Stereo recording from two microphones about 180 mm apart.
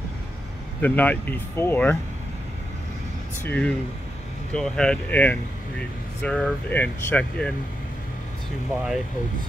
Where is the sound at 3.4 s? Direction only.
10° left (ahead or behind).